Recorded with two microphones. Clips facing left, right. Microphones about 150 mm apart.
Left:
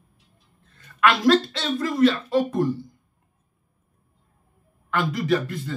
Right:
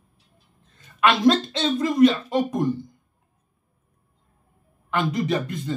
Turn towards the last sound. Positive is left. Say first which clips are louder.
# left 2 dB
turn(degrees=-20)  # may be behind; listen again after turning